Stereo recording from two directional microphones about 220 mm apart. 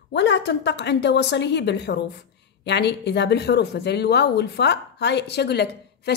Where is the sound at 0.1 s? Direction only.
50° left (ahead or behind).